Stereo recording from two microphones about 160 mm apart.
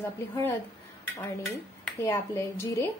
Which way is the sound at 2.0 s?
15° left (ahead or behind).